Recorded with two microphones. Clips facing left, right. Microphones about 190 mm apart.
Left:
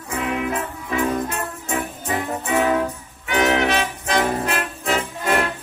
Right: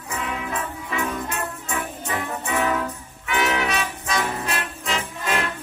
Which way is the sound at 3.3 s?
50° left (ahead or behind).